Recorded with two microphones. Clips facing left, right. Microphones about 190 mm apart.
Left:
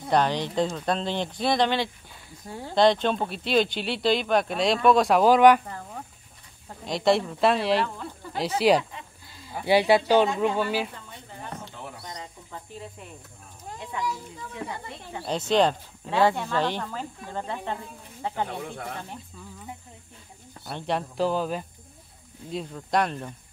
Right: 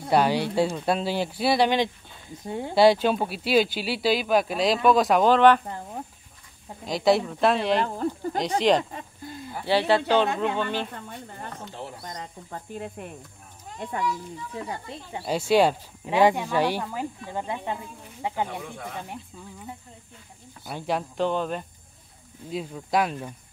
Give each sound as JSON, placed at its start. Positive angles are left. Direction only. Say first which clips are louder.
{"t": 0.0, "sound": "speech", "louder": "right 2 dB", "side_deg": -10}
{"t": 2.7, "sound": "speech", "louder": "right 2 dB", "side_deg": -5}
{"t": 6.9, "sound": "speech", "louder": "right 1 dB", "side_deg": 0}
{"t": 7.8, "sound": "speech", "louder": "right 5 dB", "side_deg": -40}
{"t": 8.4, "sound": "speech", "louder": "left 1 dB", "side_deg": 5}
{"t": 8.9, "sound": "a sound", "louder": "right 7 dB", "side_deg": -50}
{"t": 9.6, "sound": "speech", "louder": "left 2 dB", "side_deg": 15}
{"t": 12.0, "sound": "snake", "louder": "right 2 dB", "side_deg": -50}
{"t": 14.6, "sound": "speech", "louder": "even", "side_deg": -35}
{"t": 15.2, "sound": "speech", "louder": "right 2 dB", "side_deg": -10}
{"t": 20.6, "sound": "speech", "louder": "right 1 dB", "side_deg": -5}